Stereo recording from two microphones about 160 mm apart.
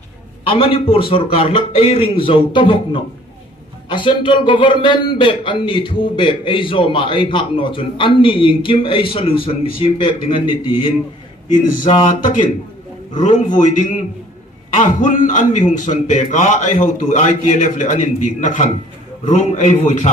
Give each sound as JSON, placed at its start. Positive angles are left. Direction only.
{"t": 0.5, "sound": "speech", "side_deg": 35}
{"t": 12.1, "sound": "a man's voice", "side_deg": 55}